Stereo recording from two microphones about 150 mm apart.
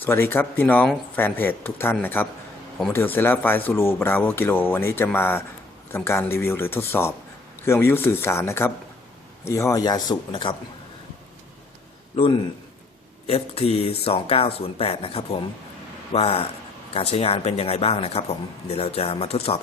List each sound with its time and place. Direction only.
0.0 s speech: 15° left (ahead or behind); by 10.5 s 30° left (ahead or behind)
12.1 s a man's voice: 40° left (ahead or behind)